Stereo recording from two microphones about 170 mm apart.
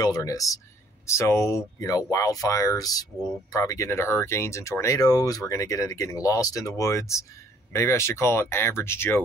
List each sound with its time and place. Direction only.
0.0 s speech: 20° left (ahead or behind)
3.2 s speech: centre (ahead or behind)
3.5 s speech: 20° left (ahead or behind)